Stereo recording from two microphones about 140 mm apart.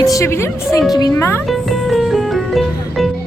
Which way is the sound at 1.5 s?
Centre (ahead or behind).